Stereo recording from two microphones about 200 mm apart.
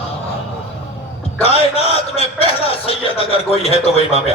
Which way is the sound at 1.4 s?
30° left (ahead or behind).